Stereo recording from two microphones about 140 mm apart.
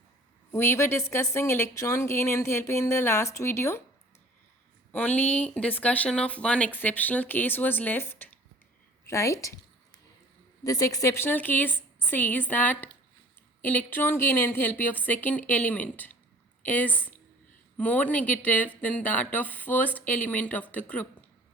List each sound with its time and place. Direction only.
0.5 s a woman's voice: 20° left (ahead or behind)
4.9 s a woman's voice: 10° left (ahead or behind)
10.6 s speech: 25° left (ahead or behind)